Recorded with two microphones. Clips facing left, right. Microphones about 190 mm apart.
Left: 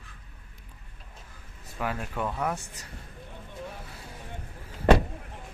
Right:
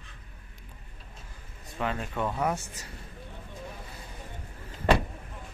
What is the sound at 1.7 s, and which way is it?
Speech, 5° left (ahead or behind).